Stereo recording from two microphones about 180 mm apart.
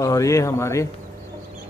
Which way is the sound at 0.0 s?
20° left (ahead or behind).